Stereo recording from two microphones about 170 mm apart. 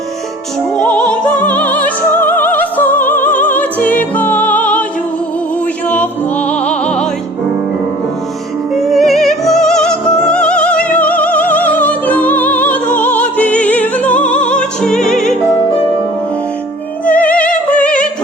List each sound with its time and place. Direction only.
0.8 s music: 5° left (ahead or behind)
5.9 s music: 10° left (ahead or behind)
8.7 s music: centre (ahead or behind)
17.1 s opera: 10° left (ahead or behind)